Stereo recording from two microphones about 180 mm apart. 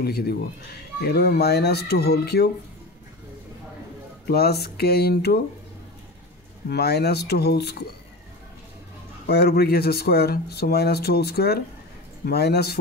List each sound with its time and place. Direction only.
0.0 s speech: 60° left (ahead or behind)
4.3 s speech: 60° left (ahead or behind)
6.7 s speech: 65° left (ahead or behind)
9.3 s speech: 60° left (ahead or behind)